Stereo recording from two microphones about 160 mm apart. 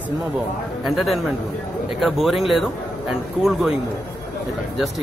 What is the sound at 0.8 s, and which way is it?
Speech, centre (ahead or behind).